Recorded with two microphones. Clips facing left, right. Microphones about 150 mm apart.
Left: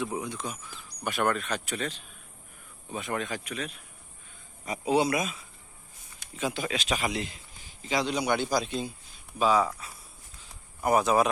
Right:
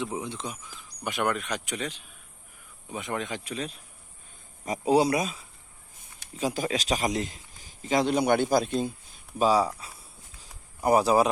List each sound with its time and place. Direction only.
0.0 s a man's voice: 20° right (ahead or behind); by 8.9 s 50° right (ahead or behind)
9.4 s a man's voice: 35° right (ahead or behind)
10.8 s a man's voice: 30° right (ahead or behind)